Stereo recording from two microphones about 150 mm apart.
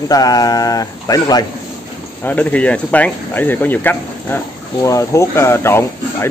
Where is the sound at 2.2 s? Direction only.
10° left (ahead or behind).